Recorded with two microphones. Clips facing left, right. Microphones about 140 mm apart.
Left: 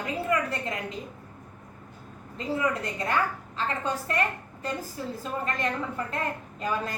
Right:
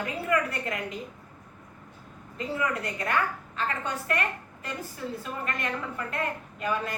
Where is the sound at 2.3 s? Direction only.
30° left (ahead or behind).